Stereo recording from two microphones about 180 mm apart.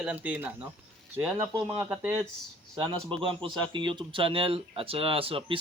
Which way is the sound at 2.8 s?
30° right (ahead or behind).